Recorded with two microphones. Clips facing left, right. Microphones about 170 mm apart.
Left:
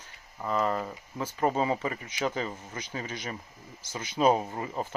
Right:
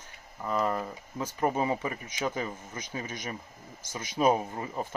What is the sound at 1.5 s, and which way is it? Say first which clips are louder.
Speech: left 1 dB; 20° left (ahead or behind).